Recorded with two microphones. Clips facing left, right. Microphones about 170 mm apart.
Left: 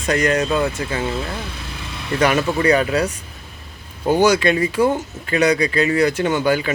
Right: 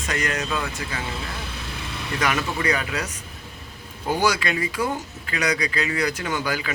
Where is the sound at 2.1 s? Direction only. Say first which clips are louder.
Left 8 dB; 30° left (ahead or behind).